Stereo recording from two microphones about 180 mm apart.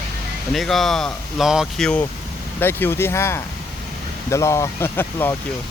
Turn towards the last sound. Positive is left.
turn(degrees=10)  # may be behind; listen again after turning